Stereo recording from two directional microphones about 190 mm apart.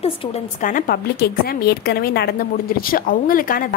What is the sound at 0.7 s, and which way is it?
A woman's voice, 50° left (ahead or behind).